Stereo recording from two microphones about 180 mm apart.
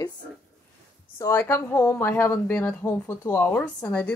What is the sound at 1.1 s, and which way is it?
Speech, 15° left (ahead or behind).